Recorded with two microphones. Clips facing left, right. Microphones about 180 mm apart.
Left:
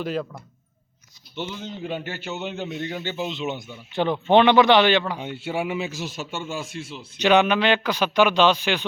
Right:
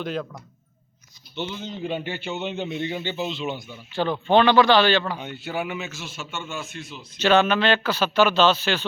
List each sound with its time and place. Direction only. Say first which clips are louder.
0.0 s a man's voice: left 2 dB; 5° left (ahead or behind)
5.4 s a man's voice: left 4 dB; 30° left (ahead or behind)
7.2 s a man's voice: left 1 dB; 15° left (ahead or behind)